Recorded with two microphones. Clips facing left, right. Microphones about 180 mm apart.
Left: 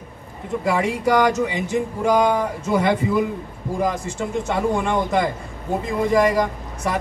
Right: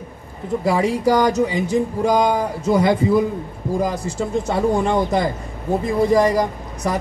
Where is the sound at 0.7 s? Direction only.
35° right (ahead or behind).